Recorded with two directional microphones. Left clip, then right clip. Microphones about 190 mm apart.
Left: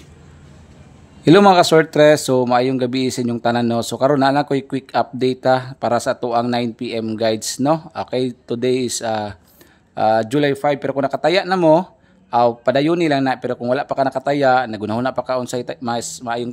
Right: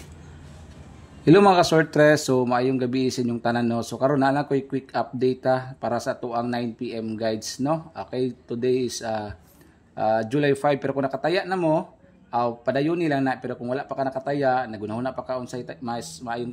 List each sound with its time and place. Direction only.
1.2 s speech: 15° left (ahead or behind)
10.5 s speech: 5° left (ahead or behind)